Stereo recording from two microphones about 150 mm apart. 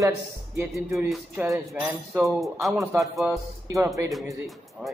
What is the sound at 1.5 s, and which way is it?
Speech, 5° right (ahead or behind).